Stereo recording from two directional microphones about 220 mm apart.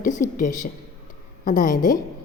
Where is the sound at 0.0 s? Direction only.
35° left (ahead or behind).